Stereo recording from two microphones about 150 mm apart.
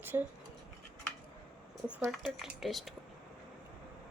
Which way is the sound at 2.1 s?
Centre (ahead or behind).